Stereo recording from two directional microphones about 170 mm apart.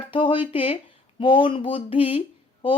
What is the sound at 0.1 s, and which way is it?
Speech, 30° left (ahead or behind).